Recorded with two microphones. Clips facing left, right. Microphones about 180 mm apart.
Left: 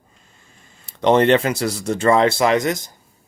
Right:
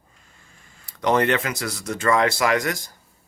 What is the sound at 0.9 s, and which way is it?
Speech, 25° left (ahead or behind).